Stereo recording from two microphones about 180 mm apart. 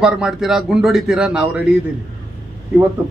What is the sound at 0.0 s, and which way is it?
A man's voice, 5° right (ahead or behind).